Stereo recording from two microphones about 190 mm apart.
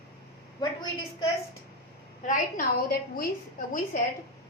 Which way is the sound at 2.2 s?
45° left (ahead or behind).